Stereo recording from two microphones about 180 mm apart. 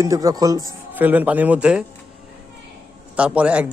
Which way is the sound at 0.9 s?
10° right (ahead or behind).